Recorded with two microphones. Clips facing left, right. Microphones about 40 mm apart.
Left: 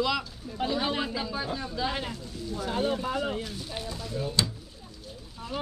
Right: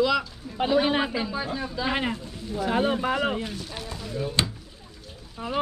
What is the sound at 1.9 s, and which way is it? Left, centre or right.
Speech, right.